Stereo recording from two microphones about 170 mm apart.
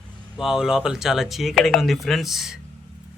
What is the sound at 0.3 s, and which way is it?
Speech, centre (ahead or behind).